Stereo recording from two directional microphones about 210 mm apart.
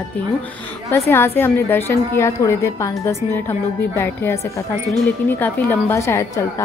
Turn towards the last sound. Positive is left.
turn(degrees=15)  # may be behind; listen again after turning